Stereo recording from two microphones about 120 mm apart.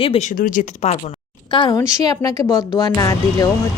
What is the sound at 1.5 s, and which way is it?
Speech, 45° left (ahead or behind).